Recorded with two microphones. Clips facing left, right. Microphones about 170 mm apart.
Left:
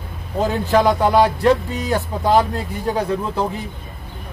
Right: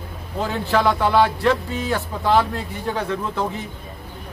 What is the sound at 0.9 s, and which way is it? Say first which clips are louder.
Speech: left 2 dB; 40° left (ahead or behind).